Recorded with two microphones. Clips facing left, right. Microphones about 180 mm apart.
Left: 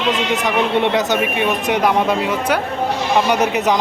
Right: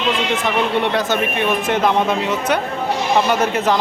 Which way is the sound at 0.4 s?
15° left (ahead or behind).